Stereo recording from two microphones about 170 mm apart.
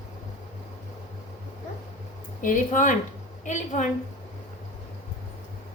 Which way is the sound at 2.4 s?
50° left (ahead or behind).